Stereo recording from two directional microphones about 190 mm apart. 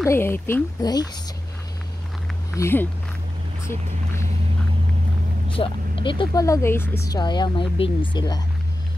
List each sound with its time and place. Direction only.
0.0 s speech: 10° left (ahead or behind)
2.5 s speech: 10° left (ahead or behind)
5.5 s speech: 30° left (ahead or behind)